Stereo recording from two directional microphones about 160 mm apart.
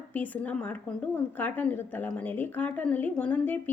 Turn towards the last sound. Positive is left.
turn(degrees=10)  # may be behind; listen again after turning